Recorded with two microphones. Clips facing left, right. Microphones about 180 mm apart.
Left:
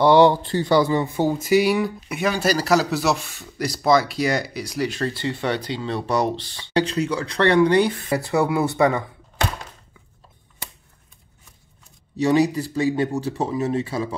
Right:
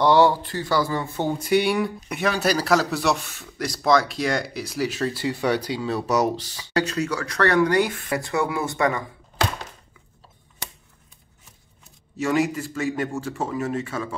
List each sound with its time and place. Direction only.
0.0 s a sound: 15° left (ahead or behind)
0.4 s speech: 25° left (ahead or behind); by 6.7 s 5° right (ahead or behind)
6.7 s speech: 30° left (ahead or behind)
12.8 s speech: 30° left (ahead or behind)
13.1 s speech: 20° left (ahead or behind)